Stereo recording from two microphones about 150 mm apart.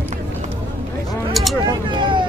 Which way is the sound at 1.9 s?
30° right (ahead or behind).